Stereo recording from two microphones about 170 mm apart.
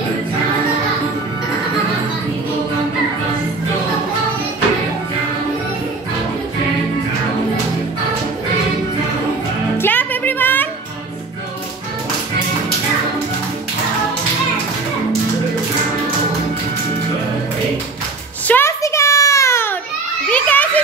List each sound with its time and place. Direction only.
9.8 s music: 10° left (ahead or behind)
18.5 s a sound: 15° left (ahead or behind)
20.2 s children playing: 10° left (ahead or behind)